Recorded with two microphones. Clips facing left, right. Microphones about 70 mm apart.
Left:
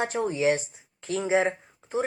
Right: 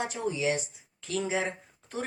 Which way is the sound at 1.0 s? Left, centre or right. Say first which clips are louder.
Left 6 dB; left.